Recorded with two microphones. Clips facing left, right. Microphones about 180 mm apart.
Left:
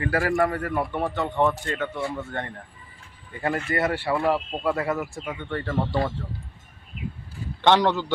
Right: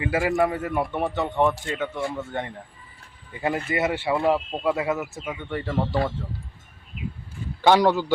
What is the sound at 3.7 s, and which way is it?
Speech, 20° right (ahead or behind).